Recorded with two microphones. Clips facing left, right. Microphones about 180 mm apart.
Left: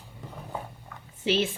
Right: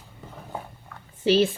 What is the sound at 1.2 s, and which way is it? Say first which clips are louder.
Speech: right 6 dB; 35° right (ahead or behind).